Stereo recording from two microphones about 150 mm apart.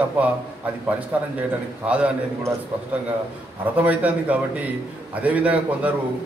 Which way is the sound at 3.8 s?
10° right (ahead or behind).